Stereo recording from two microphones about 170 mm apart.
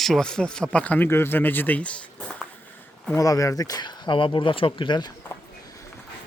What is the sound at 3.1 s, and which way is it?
Speech, 20° left (ahead or behind).